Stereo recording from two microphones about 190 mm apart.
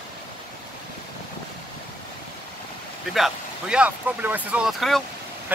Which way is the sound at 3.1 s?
5° right (ahead or behind).